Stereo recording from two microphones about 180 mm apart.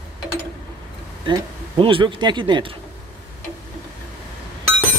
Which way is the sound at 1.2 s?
25° right (ahead or behind).